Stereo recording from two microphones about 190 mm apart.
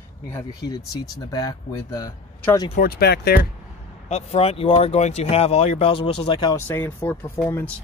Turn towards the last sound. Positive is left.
turn(degrees=10)  # may be behind; listen again after turning